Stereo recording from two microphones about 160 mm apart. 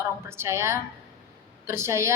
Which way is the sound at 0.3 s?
15° right (ahead or behind).